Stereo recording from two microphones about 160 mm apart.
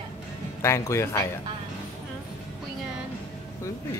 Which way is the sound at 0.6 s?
15° left (ahead or behind).